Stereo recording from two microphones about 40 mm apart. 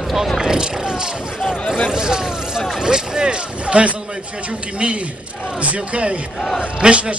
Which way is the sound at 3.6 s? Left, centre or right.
Right.